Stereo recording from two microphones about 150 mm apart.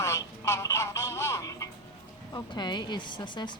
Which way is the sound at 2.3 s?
30° left (ahead or behind).